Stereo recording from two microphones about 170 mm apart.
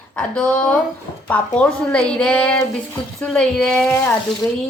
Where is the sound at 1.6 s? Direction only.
5° left (ahead or behind).